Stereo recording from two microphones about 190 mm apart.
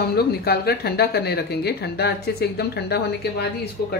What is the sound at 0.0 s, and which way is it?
Speech, 55° left (ahead or behind).